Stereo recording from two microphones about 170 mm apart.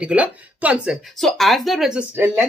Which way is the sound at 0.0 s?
10° right (ahead or behind).